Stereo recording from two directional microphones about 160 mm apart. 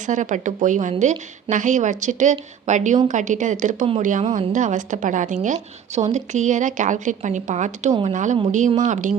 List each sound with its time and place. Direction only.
0.1 s a woman's voice: 50° right (ahead or behind)